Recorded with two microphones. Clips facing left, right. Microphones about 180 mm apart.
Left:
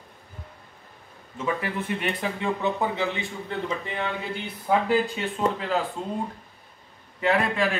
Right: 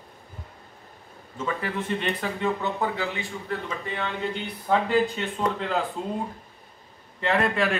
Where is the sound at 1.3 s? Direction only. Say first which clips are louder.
Left 1 dB; 10° left (ahead or behind).